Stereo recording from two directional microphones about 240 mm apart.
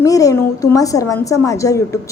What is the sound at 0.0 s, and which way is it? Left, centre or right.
A woman's voice, centre.